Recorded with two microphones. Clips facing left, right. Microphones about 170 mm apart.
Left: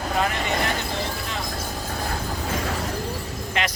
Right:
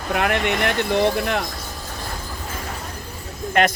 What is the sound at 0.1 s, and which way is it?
Speech, 65° right (ahead or behind).